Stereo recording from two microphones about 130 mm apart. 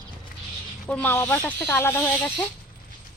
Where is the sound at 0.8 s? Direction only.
15° left (ahead or behind).